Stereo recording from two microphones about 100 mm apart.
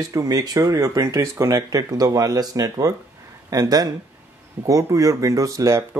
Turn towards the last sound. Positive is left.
turn(degrees=-30)  # may be behind; listen again after turning